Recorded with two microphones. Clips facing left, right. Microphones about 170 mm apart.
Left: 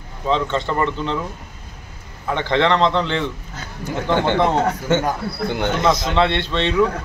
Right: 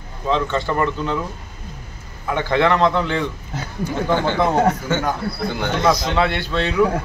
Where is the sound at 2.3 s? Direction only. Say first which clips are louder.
Even; 5° right (ahead or behind).